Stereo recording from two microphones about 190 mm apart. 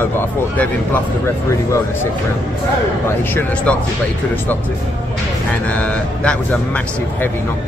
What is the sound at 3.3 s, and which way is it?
Speech, 5° left (ahead or behind).